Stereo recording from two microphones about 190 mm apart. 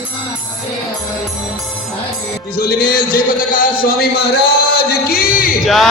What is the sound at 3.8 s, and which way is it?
Speech, 55° left (ahead or behind).